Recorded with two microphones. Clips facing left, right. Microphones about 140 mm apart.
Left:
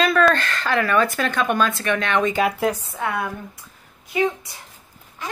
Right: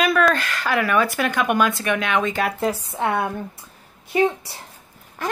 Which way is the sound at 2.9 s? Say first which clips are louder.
Right 3 dB; 25° right (ahead or behind).